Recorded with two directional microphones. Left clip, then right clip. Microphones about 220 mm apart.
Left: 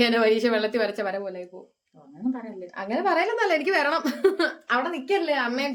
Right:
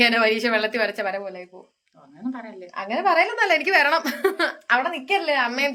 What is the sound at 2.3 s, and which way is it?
Speech, 20° left (ahead or behind).